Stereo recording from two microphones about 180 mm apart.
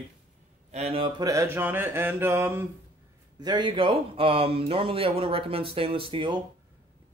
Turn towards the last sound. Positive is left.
turn(degrees=-30)  # may be behind; listen again after turning